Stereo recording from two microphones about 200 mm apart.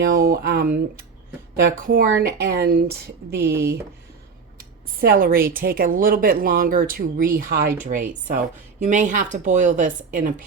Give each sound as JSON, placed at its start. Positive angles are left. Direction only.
{"t": 0.1, "sound": "speech", "side_deg": -45}
{"t": 1.6, "sound": "speech", "side_deg": -45}
{"t": 3.5, "sound": "speech", "side_deg": -15}
{"t": 4.9, "sound": "speech", "side_deg": -50}